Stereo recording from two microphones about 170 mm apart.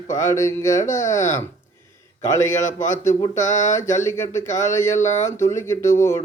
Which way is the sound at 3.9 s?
15° left (ahead or behind).